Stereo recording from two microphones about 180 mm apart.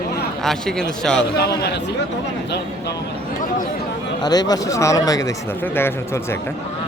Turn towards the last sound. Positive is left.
turn(degrees=20)  # may be behind; listen again after turning